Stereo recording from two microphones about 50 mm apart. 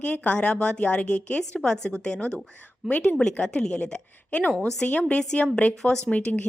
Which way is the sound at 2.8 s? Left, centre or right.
Centre.